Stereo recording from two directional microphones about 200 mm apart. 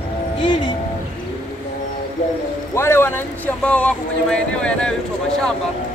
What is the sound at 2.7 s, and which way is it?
Speech, 15° left (ahead or behind).